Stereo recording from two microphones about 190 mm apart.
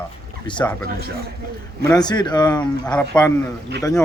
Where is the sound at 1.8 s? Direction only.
20° left (ahead or behind).